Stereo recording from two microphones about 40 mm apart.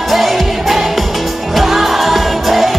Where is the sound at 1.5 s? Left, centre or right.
Centre.